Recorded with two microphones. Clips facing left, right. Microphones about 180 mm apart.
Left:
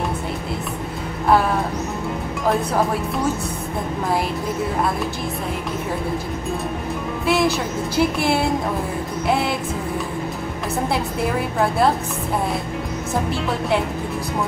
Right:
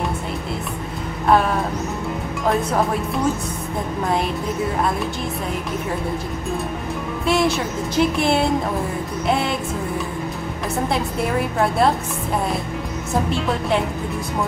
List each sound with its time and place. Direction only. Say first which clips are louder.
7.2 s music: even; centre (ahead or behind)